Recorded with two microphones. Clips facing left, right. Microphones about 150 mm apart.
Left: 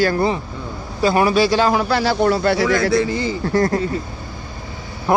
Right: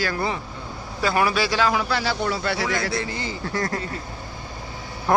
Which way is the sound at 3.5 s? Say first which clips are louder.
Left 9 dB; 30° left (ahead or behind).